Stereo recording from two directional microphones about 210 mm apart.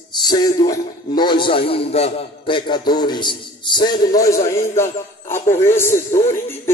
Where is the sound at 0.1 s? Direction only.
20° left (ahead or behind).